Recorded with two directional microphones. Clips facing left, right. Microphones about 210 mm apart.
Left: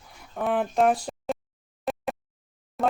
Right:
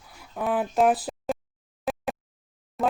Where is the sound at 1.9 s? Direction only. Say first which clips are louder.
Even; centre (ahead or behind).